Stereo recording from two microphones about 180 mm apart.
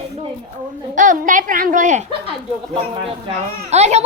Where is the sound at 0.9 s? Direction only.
45° right (ahead or behind).